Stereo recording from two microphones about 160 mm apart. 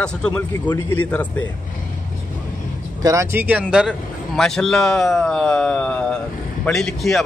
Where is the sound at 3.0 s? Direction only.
20° right (ahead or behind).